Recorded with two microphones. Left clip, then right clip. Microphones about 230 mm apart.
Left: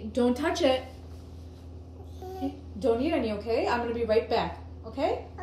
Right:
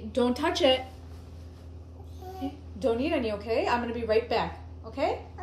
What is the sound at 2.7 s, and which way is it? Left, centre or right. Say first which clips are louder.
A woman's voice: left 1 dB; right.